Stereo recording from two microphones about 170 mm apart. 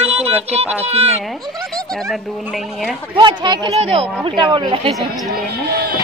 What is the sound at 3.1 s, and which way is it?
A child's voice, 25° right (ahead or behind).